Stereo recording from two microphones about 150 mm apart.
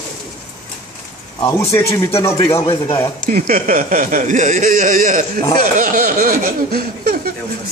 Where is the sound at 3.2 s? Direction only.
65° right (ahead or behind).